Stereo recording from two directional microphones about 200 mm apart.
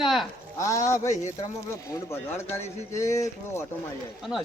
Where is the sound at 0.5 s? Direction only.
15° left (ahead or behind).